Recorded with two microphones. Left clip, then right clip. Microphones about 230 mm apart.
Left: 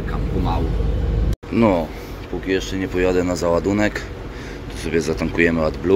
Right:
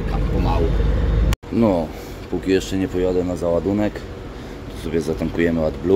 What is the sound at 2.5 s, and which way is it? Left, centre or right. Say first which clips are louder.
Speech: right 2 dB; right.